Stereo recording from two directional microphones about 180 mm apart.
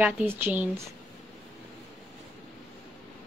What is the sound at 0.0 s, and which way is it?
Speech, 10° right (ahead or behind).